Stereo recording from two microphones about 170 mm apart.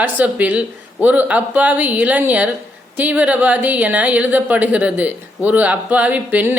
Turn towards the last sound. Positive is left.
turn(degrees=-10)  # may be behind; listen again after turning